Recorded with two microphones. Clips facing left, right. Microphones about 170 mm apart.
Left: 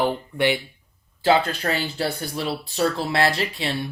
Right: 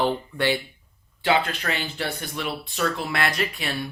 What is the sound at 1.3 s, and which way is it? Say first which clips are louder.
Speech: left 3 dB; 35° left (ahead or behind).